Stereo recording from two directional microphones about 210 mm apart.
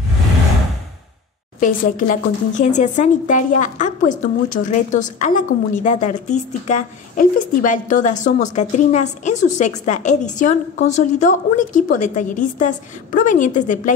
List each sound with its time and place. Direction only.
1.6 s a woman's voice: 40° left (ahead or behind)